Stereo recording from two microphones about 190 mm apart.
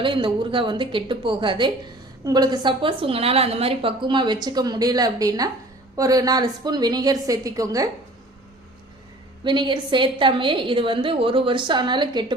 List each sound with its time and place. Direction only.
0.0 s a woman's voice: 25° right (ahead or behind)
9.4 s a woman's voice: 25° right (ahead or behind)